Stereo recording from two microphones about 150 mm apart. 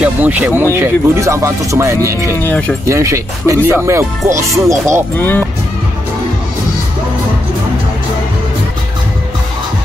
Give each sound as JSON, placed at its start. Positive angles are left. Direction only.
{"t": 0.0, "sound": "speech", "side_deg": -10}
{"t": 2.3, "sound": "speech", "side_deg": 10}
{"t": 2.9, "sound": "speech", "side_deg": -20}
{"t": 5.1, "sound": "speech", "side_deg": 15}